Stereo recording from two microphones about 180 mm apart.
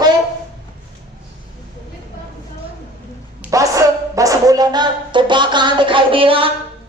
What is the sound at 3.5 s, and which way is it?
A child's voice, 20° right (ahead or behind).